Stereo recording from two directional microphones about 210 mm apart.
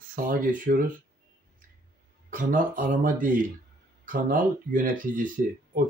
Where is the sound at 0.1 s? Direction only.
40° right (ahead or behind).